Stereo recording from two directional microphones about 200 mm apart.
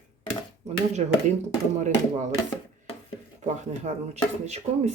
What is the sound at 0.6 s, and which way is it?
Speech, 35° right (ahead or behind).